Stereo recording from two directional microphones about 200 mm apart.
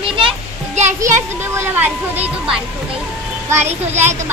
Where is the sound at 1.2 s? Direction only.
10° right (ahead or behind).